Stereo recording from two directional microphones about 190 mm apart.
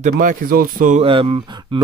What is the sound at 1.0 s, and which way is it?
Speech, 30° right (ahead or behind).